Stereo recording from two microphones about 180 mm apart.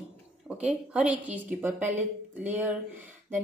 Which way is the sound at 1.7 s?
40° right (ahead or behind).